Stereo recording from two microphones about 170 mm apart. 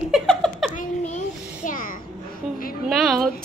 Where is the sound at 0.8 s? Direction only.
45° left (ahead or behind).